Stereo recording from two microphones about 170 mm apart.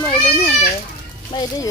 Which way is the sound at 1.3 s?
25° left (ahead or behind).